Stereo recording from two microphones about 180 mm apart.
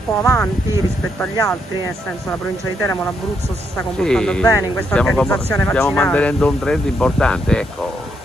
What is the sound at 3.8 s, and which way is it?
Speech, 5° left (ahead or behind).